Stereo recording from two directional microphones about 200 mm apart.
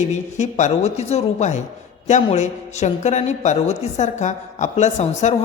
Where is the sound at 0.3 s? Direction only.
35° left (ahead or behind).